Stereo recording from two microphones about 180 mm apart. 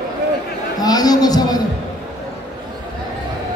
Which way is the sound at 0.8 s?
20° left (ahead or behind).